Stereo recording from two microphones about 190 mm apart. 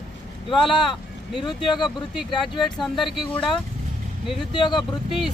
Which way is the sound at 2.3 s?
25° left (ahead or behind).